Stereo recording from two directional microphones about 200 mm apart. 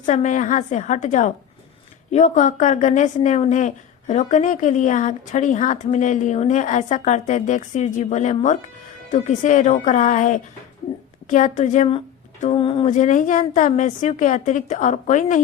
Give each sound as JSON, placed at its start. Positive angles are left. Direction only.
{"t": 0.0, "sound": "a woman's voice", "side_deg": 40}